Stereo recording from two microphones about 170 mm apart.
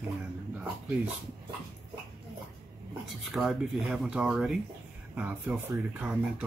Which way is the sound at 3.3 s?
Centre (ahead or behind).